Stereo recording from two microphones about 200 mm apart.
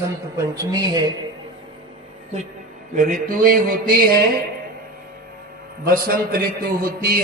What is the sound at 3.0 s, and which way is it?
Speech, 45° right (ahead or behind).